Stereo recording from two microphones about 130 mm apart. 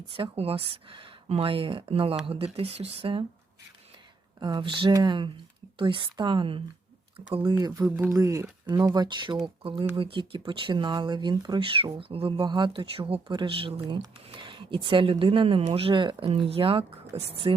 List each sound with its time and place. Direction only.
0.1 s speech: 45° right (ahead or behind)
4.4 s speech: 35° right (ahead or behind)
7.5 s speech: 25° right (ahead or behind); by 17.3 s 50° right (ahead or behind)